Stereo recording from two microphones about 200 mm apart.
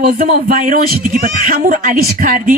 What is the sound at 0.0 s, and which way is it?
A woman's voice, 45° right (ahead or behind).